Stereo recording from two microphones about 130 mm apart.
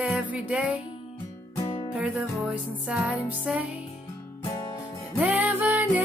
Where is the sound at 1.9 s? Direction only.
10° right (ahead or behind).